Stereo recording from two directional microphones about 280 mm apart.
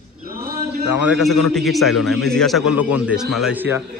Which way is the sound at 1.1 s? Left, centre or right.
Centre.